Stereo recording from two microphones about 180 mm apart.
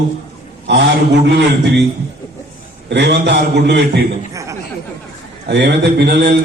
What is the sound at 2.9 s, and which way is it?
Speech, 70° right (ahead or behind).